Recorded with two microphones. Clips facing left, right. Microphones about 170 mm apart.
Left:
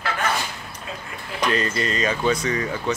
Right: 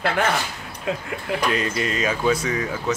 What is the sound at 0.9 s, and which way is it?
Speech, 70° right (ahead or behind).